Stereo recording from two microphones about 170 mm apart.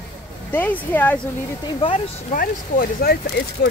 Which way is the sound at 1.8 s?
45° left (ahead or behind).